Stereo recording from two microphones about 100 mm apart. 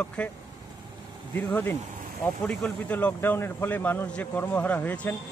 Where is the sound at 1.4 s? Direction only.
15° left (ahead or behind).